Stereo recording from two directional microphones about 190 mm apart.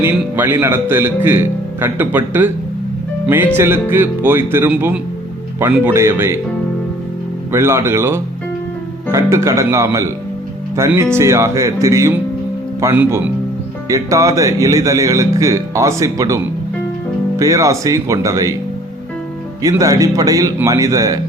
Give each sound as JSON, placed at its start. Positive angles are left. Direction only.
{"t": 0.0, "sound": "speech", "side_deg": -10}
{"t": 7.5, "sound": "speech", "side_deg": -15}
{"t": 19.6, "sound": "speech", "side_deg": -15}